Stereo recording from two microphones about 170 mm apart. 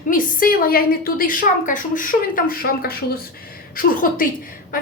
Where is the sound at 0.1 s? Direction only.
55° left (ahead or behind).